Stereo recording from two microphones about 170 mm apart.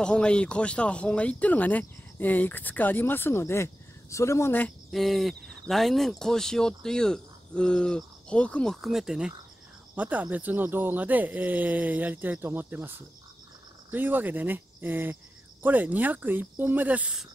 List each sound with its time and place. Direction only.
0.0 s speech: 5° left (ahead or behind)